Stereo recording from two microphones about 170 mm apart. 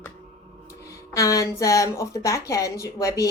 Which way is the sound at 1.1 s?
20° left (ahead or behind).